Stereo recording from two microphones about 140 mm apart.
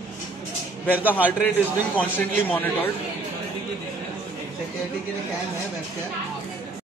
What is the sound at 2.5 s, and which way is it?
Speech, 15° left (ahead or behind).